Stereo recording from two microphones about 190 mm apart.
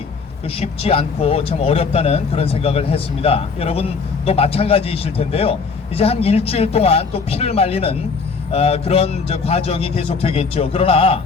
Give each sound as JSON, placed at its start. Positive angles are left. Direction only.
{"t": 0.6, "sound": "a man's voice", "side_deg": 30}